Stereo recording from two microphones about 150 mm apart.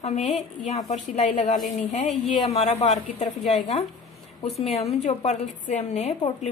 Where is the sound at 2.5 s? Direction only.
50° left (ahead or behind).